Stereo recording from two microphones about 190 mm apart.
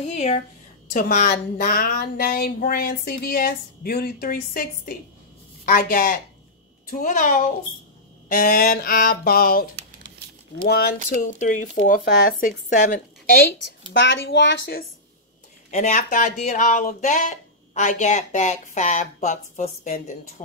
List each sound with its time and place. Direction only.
0.0 s a woman's voice: 35° left (ahead or behind)
11.1 s a woman's voice: 45° left (ahead or behind)
13.9 s a woman's voice: 75° left (ahead or behind); by 14.9 s 60° left (ahead or behind)
15.7 s speech: 40° left (ahead or behind)